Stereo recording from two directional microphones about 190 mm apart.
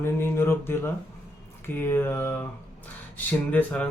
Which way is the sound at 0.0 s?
10° left (ahead or behind).